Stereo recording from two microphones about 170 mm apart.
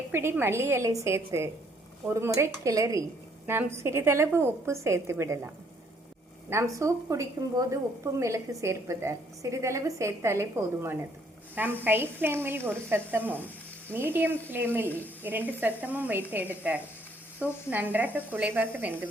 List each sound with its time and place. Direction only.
0.1 s a woman's voice: 15° right (ahead or behind)
6.5 s a woman's voice: 15° right (ahead or behind)
11.5 s a woman's voice: 10° right (ahead or behind)